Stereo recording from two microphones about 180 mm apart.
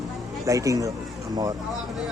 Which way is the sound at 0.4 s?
20° right (ahead or behind).